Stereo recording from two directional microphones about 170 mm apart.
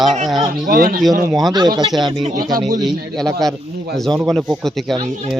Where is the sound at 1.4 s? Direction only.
25° right (ahead or behind).